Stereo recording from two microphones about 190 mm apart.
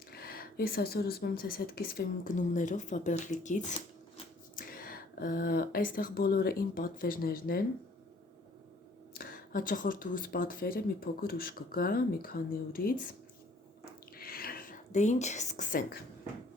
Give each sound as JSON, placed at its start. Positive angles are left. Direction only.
{"t": 0.1, "sound": "speech", "side_deg": 55}
{"t": 9.1, "sound": "speech", "side_deg": 50}
{"t": 13.8, "sound": "a sound", "side_deg": 50}